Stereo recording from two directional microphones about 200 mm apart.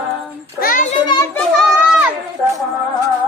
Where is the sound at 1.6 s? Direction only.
5° right (ahead or behind).